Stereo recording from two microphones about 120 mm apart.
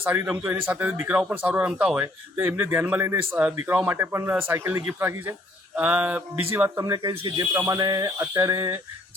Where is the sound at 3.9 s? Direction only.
20° right (ahead or behind).